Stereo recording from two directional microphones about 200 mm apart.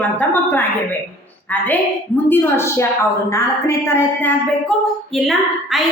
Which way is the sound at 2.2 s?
10° left (ahead or behind).